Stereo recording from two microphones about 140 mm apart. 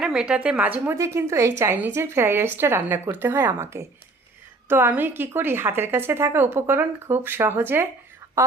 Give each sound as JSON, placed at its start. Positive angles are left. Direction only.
{"t": 0.0, "sound": "a woman's voice", "side_deg": -5}
{"t": 0.9, "sound": "a woman's voice", "side_deg": -20}